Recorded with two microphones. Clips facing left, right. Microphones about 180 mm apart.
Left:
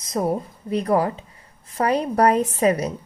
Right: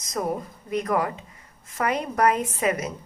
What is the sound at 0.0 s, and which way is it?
A woman's voice, 30° left (ahead or behind).